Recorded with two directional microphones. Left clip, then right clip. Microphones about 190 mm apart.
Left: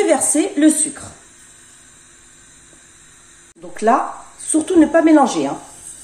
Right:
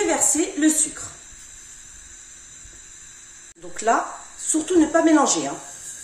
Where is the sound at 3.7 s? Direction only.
25° left (ahead or behind).